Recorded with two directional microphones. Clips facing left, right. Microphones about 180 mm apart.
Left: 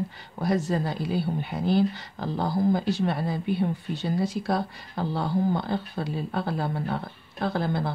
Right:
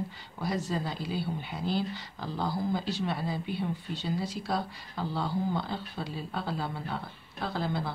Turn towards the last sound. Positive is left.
turn(degrees=55)  # may be behind; listen again after turning